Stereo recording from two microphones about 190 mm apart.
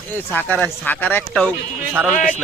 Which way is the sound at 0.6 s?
10° left (ahead or behind).